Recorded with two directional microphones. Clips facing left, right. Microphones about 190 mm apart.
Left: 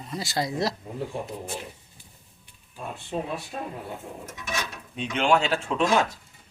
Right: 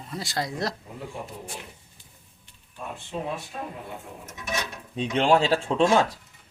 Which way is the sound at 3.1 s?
40° left (ahead or behind).